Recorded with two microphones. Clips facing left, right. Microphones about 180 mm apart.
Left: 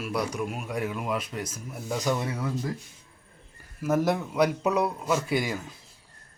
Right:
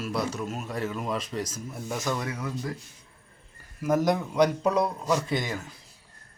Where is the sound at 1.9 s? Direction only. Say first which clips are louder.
Left 3 dB; 20° left (ahead or behind).